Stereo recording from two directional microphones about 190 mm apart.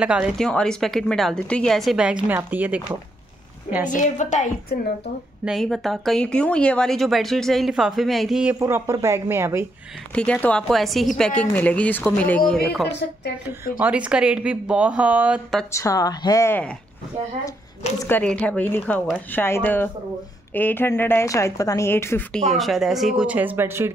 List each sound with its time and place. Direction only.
0.0 s speech: 5° right (ahead or behind)
3.9 s a woman's voice: 40° left (ahead or behind)
5.4 s speech: centre (ahead or behind)
8.5 s speech: 15° right (ahead or behind)
10.1 s speech: 5° left (ahead or behind)
13.0 s a woman's voice: 60° left (ahead or behind)
13.7 s speech: 5° right (ahead or behind)
15.7 s a woman's voice: 15° left (ahead or behind)
17.9 s a woman's voice: 10° left (ahead or behind)
22.5 s speech: centre (ahead or behind)